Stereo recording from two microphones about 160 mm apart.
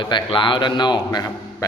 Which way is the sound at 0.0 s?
30° left (ahead or behind).